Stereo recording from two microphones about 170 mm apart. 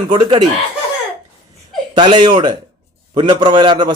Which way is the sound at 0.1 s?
25° right (ahead or behind).